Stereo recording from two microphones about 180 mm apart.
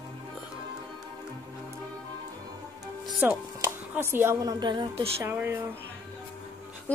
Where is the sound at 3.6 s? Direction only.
10° right (ahead or behind); by 5.1 s 30° right (ahead or behind).